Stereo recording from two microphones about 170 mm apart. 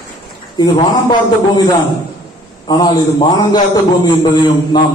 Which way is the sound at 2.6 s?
25° left (ahead or behind).